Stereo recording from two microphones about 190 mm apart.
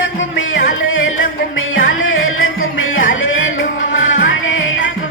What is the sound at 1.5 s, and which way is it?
Music, 90° left.